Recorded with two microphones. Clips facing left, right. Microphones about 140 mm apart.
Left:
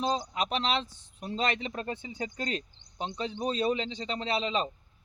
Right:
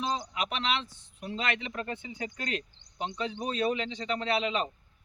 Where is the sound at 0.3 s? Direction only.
35° left (ahead or behind).